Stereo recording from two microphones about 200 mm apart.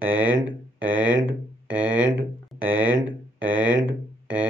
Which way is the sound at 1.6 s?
10° right (ahead or behind).